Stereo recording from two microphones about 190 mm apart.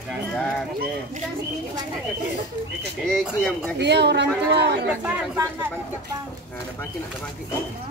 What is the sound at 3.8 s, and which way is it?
Speech, 65° right (ahead or behind).